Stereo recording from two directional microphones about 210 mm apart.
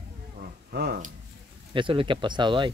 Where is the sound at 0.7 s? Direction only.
50° right (ahead or behind).